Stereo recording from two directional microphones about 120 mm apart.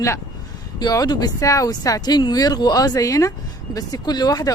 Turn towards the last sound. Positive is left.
turn(degrees=30)  # may be behind; listen again after turning